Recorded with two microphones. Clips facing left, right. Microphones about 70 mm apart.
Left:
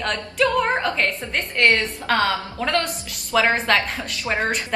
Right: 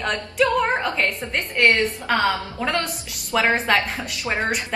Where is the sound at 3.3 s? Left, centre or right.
Centre.